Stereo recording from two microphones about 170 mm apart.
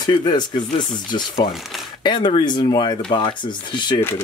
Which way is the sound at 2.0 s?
30° left (ahead or behind).